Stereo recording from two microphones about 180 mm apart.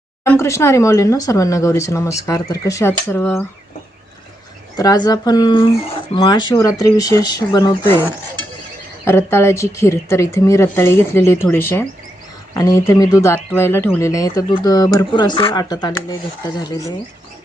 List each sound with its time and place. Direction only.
0.3 s speech: 15° left (ahead or behind)
4.8 s speech: 20° left (ahead or behind)
9.0 s speech: 15° left (ahead or behind)